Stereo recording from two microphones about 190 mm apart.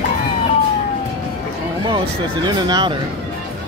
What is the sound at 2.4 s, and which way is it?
Speech, 25° right (ahead or behind).